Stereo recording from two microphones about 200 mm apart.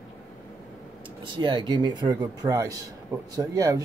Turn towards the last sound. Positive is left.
turn(degrees=-15)  # may be behind; listen again after turning